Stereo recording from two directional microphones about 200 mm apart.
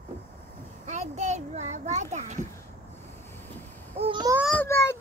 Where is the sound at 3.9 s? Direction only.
25° right (ahead or behind).